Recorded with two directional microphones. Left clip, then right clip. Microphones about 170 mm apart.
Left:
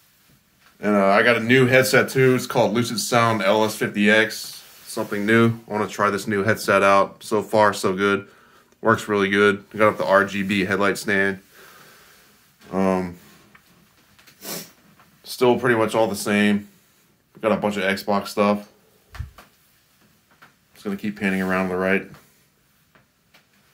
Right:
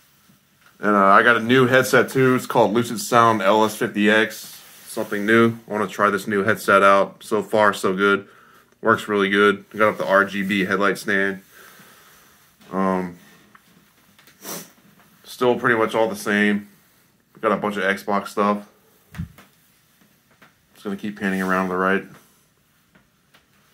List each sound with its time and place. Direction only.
0.8 s speech: 5° left (ahead or behind)
12.7 s speech: 25° left (ahead or behind)
14.5 s snort: 20° left (ahead or behind)
15.2 s speech: 20° left (ahead or behind)
20.7 s speech: 15° left (ahead or behind)